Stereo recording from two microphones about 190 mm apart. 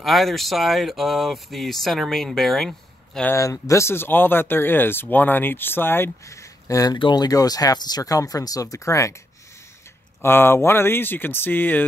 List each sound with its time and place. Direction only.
0.0 s speech: centre (ahead or behind)
3.2 s speech: 15° left (ahead or behind)
10.2 s speech: 10° left (ahead or behind)